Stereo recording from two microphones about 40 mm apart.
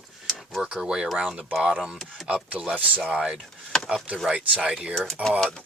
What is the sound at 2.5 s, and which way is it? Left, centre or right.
Speech, right.